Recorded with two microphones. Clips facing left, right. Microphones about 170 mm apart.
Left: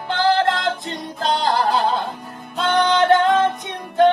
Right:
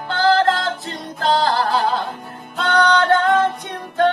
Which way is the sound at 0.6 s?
20° left (ahead or behind).